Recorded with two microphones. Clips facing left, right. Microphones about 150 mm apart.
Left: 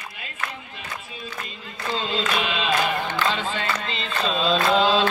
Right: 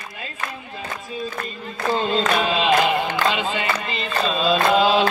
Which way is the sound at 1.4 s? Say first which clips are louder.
Right 7 dB; 50° right (ahead or behind).